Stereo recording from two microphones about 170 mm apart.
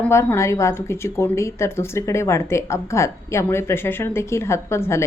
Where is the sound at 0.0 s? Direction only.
15° left (ahead or behind).